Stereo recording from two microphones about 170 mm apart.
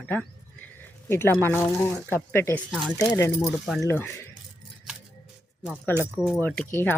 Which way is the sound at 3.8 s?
15° left (ahead or behind).